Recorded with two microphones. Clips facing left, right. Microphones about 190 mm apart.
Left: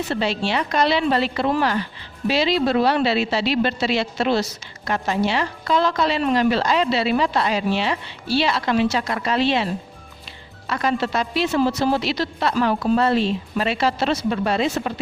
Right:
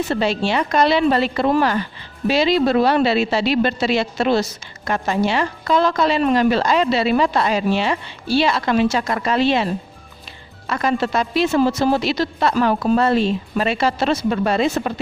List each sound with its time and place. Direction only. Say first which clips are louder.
0.1 s a woman's voice: right 1 dB; 45° right (ahead or behind)
10.7 s a woman's voice: right 2 dB; 45° right (ahead or behind)